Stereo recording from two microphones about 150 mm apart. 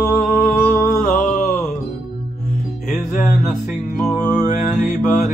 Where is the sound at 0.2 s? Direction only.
65° left (ahead or behind).